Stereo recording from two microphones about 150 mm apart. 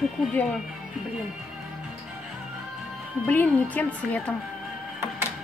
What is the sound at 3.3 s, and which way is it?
A woman's voice, 10° left (ahead or behind).